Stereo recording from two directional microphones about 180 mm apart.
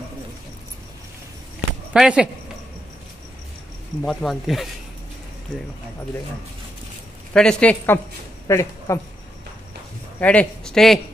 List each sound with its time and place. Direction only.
2.0 s speech: 5° right (ahead or behind)
4.0 s speech: centre (ahead or behind)
7.3 s speech: 5° left (ahead or behind)
10.2 s speech: 5° left (ahead or behind)